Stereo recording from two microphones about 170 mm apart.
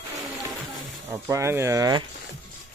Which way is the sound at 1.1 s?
15° right (ahead or behind).